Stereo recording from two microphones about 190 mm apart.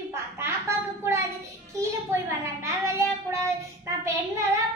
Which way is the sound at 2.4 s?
15° right (ahead or behind).